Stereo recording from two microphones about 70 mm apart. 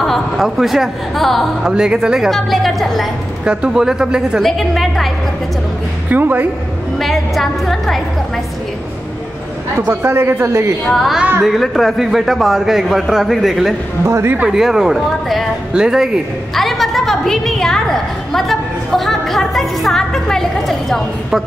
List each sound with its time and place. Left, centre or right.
0.0 s a woman's voice: centre
1.6 s a woman's voice: centre
3.4 s speech: centre
4.4 s a woman's voice: centre
6.0 s speech: right
7.0 s a woman's voice: centre
10.0 s a man's voice: right
10.9 s a woman's voice: centre
14.0 s a man's voice: right
14.5 s a woman's voice: centre
16.5 s a woman's voice: centre